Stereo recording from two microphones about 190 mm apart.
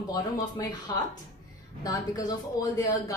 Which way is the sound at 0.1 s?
20° left (ahead or behind).